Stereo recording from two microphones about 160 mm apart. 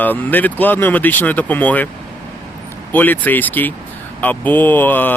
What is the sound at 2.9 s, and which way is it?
Speech, 10° left (ahead or behind).